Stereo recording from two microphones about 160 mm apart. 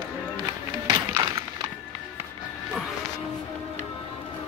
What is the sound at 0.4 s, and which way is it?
Run, 30° right (ahead or behind).